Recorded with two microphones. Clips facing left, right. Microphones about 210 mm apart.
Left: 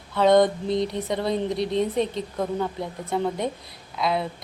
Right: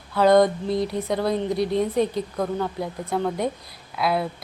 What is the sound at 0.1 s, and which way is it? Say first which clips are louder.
Speech: right 1 dB; centre (ahead or behind).